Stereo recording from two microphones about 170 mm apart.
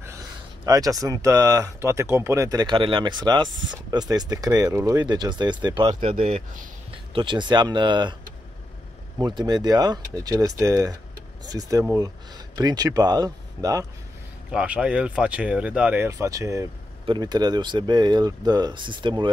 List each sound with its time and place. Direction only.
0.7 s speech: 20° right (ahead or behind)
9.2 s speech: 25° right (ahead or behind)
14.5 s speech: 5° right (ahead or behind)
16.1 s speech: 20° right (ahead or behind)